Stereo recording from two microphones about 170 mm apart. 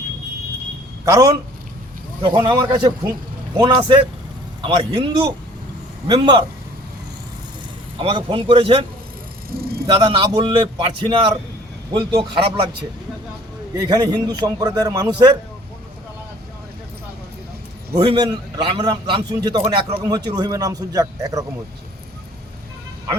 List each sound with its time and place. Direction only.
1.0 s a man's voice: 20° right (ahead or behind)
7.9 s a man's voice: 30° right (ahead or behind)
9.8 s a man's voice: 30° right (ahead or behind)
13.7 s a man's voice: 25° right (ahead or behind)
17.9 s a man's voice: 30° right (ahead or behind)